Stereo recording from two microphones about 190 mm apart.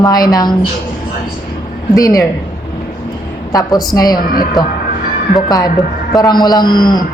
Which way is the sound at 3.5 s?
20° left (ahead or behind).